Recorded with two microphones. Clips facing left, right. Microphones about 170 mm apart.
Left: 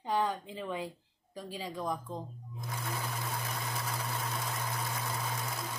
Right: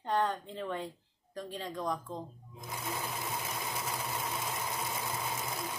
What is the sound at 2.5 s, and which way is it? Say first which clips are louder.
Sewing machine: even; 20° right (ahead or behind).